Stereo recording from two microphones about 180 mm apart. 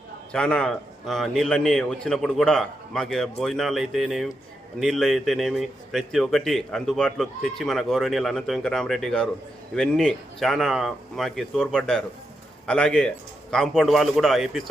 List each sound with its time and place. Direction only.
0.3 s speech: 5° left (ahead or behind)